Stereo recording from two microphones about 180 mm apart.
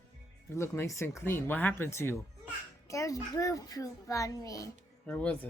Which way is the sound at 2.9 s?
15° left (ahead or behind).